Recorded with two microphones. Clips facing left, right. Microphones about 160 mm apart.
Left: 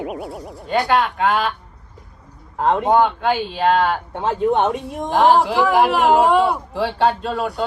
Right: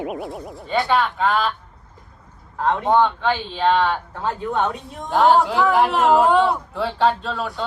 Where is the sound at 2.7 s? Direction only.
5° left (ahead or behind).